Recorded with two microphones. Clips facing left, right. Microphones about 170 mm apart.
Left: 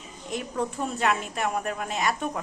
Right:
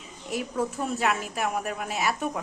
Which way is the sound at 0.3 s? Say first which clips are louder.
Right 1 dB; 5° right (ahead or behind).